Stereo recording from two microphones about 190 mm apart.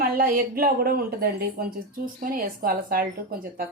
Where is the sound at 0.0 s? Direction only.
50° right (ahead or behind).